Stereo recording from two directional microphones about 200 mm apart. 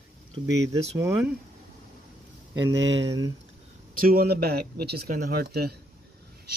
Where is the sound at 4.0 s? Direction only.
50° right (ahead or behind).